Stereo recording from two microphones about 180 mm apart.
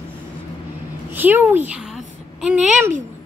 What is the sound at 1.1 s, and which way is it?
Child singing, 10° right (ahead or behind).